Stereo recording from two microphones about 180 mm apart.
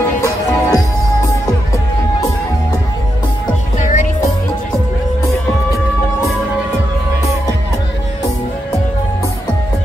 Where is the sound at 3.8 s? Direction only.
45° left (ahead or behind).